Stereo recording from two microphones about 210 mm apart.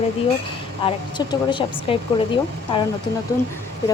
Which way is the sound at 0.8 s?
20° left (ahead or behind).